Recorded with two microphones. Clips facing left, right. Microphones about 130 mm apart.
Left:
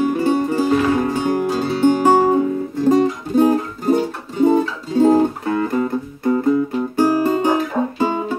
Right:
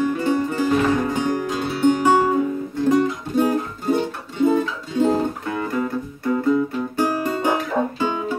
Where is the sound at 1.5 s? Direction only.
35° left (ahead or behind).